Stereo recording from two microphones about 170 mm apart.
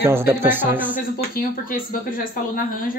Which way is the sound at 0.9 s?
55° left (ahead or behind).